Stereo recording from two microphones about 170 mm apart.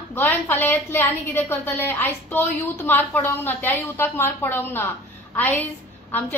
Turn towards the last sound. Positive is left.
turn(degrees=10)  # may be behind; listen again after turning